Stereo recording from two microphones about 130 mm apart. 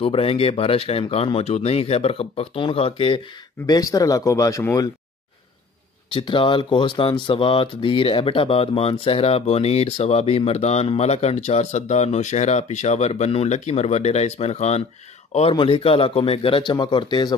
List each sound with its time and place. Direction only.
0.0 s speech: 45° left (ahead or behind)
3.6 s speech: 30° left (ahead or behind)
6.0 s speech: 40° left (ahead or behind); by 14.8 s 55° left (ahead or behind)
15.5 s speech: 45° left (ahead or behind)